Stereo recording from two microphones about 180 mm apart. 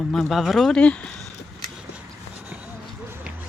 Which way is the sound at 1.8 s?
5° right (ahead or behind).